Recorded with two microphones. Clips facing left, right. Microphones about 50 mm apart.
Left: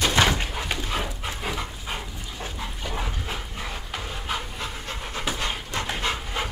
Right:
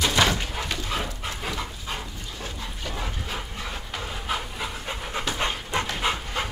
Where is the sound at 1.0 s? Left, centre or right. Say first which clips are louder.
Left 1 dB; centre.